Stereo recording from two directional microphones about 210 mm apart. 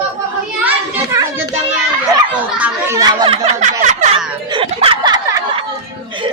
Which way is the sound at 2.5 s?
5° right (ahead or behind).